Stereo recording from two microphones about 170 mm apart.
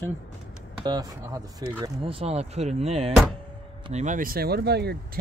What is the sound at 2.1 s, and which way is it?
Speech, 35° right (ahead or behind).